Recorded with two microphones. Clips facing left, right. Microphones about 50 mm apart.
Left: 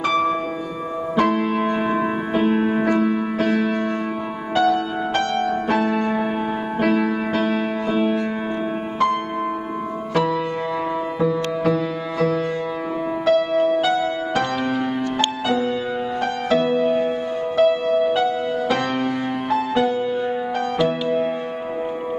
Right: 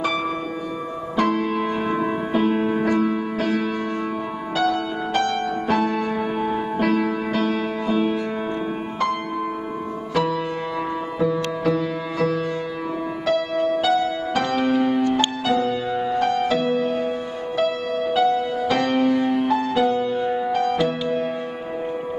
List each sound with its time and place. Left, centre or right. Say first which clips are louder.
0.0 s music: left 4 dB; centre
1.3 s music: left 2 dB; centre
10.1 s music: left 2 dB; centre
20.8 s music: left 2 dB; centre